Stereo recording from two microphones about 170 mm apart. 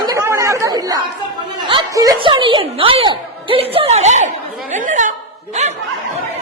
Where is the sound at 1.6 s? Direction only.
25° right (ahead or behind); by 5.7 s 40° right (ahead or behind).